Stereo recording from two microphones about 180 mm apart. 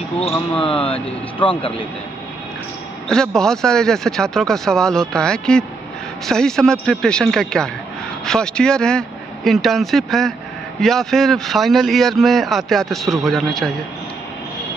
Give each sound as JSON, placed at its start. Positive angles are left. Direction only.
{"t": 0.2, "sound": "speech", "side_deg": 30}
{"t": 3.1, "sound": "a man's voice", "side_deg": 5}